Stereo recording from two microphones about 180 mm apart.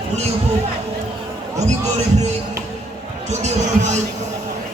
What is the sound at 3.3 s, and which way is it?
Basketball bounce, 40° right (ahead or behind).